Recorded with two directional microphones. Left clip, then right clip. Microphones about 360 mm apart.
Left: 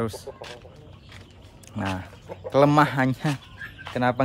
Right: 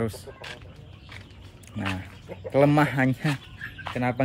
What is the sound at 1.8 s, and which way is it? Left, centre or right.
A man's voice, centre.